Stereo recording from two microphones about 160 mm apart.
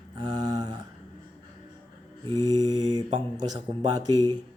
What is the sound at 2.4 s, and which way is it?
Speech, 25° right (ahead or behind).